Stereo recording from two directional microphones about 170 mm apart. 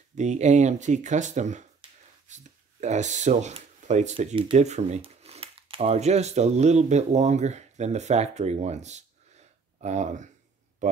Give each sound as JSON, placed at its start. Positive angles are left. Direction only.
{"t": 0.2, "sound": "speech", "side_deg": -45}
{"t": 1.8, "sound": "whispering", "side_deg": -30}
{"t": 2.2, "sound": "speech", "side_deg": -45}